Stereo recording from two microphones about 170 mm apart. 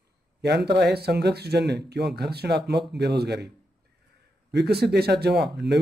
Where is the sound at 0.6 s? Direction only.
70° right (ahead or behind).